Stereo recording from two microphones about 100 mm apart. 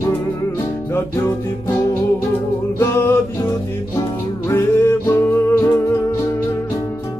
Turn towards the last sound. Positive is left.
turn(degrees=25)  # may be behind; listen again after turning